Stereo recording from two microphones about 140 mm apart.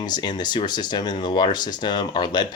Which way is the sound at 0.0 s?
30° left (ahead or behind).